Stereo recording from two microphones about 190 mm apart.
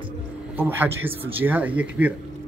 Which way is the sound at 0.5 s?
10° right (ahead or behind).